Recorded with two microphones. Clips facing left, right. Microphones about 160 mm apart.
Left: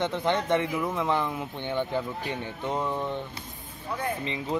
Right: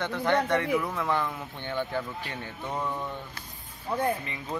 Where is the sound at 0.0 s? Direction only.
20° left (ahead or behind).